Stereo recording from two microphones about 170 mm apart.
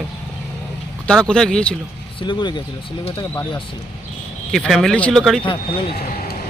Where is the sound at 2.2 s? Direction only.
25° left (ahead or behind).